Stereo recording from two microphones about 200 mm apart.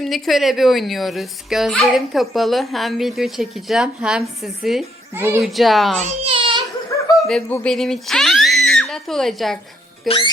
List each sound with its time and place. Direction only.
0.0 s speech: centre (ahead or behind)
5.1 s speech: 10° right (ahead or behind)
5.4 s speech: centre (ahead or behind)
6.0 s baby cry: 30° right (ahead or behind)
7.2 s speech: 5° left (ahead or behind)
10.1 s speech: 25° left (ahead or behind)